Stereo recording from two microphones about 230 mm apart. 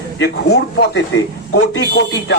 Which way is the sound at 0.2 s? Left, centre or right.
Left.